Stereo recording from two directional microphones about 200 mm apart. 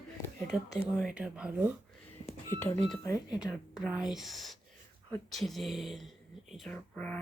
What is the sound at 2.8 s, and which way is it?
Speech, centre (ahead or behind).